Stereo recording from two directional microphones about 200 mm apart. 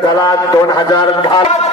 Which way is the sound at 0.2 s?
20° left (ahead or behind).